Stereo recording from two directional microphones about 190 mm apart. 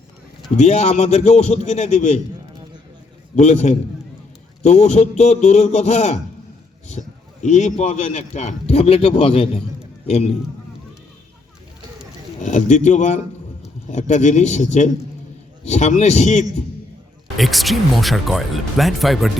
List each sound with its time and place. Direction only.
0.5 s a man's voice: 35° left (ahead or behind)
3.3 s a man's voice: 35° left (ahead or behind)
7.4 s a man's voice: 35° left (ahead or behind)
12.4 s a man's voice: 40° left (ahead or behind)
17.3 s speech: centre (ahead or behind)